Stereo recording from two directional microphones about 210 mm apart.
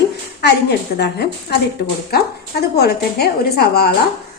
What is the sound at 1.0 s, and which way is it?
A woman's voice, 50° left (ahead or behind).